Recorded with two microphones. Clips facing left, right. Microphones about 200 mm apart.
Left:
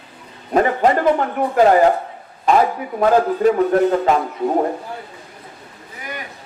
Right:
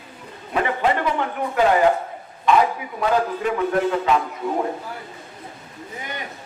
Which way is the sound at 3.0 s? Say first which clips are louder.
Left 7 dB; 40° left (ahead or behind).